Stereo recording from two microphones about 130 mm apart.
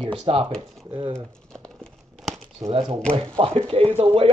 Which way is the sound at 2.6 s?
50° right (ahead or behind).